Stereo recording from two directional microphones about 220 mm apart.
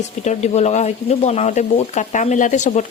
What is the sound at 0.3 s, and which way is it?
Speech, 30° left (ahead or behind).